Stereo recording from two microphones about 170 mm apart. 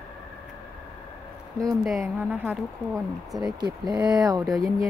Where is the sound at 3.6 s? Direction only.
25° right (ahead or behind).